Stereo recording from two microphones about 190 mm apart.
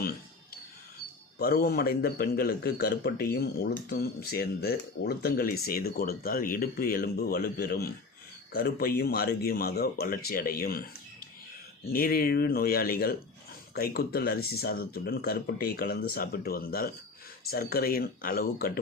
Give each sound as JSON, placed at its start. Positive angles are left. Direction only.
{"t": 0.0, "sound": "a sound", "side_deg": 50}
{"t": 1.4, "sound": "a man's voice", "side_deg": 55}
{"t": 11.9, "sound": "speech", "side_deg": 50}